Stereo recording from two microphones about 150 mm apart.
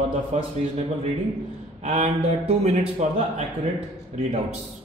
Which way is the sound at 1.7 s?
50° right (ahead or behind).